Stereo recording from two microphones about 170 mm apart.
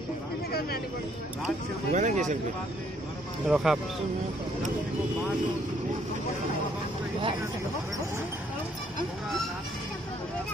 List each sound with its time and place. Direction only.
0.5 s a sound: 65° left (ahead or behind)
1.9 s speech: 45° right (ahead or behind)
3.4 s speech: 5° right (ahead or behind)